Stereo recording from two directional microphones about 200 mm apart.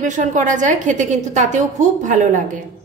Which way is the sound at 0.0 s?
40° right (ahead or behind).